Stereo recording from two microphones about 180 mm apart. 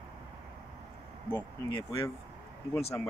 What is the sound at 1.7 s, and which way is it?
Speech, 25° left (ahead or behind).